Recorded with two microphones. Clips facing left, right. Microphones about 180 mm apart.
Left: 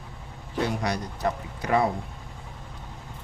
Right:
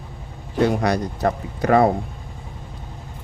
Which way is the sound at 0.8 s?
70° right (ahead or behind).